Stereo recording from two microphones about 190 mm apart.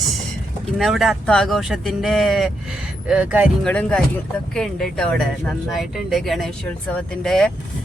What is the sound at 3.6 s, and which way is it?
Speech, 5° left (ahead or behind).